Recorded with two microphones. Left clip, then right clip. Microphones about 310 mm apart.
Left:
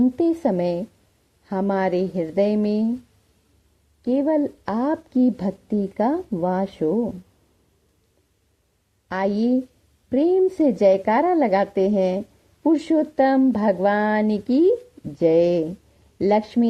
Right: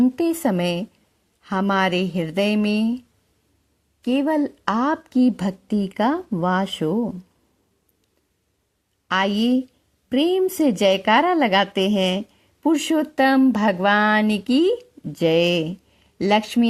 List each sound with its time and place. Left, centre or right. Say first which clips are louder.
0.0 s a woman's voice: even; right
4.0 s a woman's voice: even; right
6.9 s speech: left 1 dB; right
9.0 s a woman's voice: right 2 dB; right